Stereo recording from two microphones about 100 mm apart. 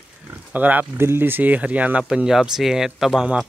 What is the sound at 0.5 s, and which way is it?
Speech, 15° right (ahead or behind).